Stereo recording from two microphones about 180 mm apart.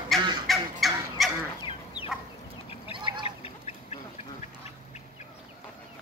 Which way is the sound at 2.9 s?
25° right (ahead or behind).